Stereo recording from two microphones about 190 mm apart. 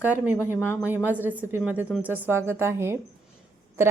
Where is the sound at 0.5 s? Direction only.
10° left (ahead or behind).